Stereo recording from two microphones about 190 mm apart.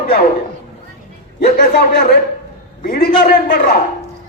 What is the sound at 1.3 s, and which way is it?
A man's voice, 50° left (ahead or behind).